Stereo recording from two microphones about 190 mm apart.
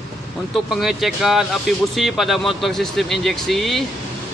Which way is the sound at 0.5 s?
Centre (ahead or behind).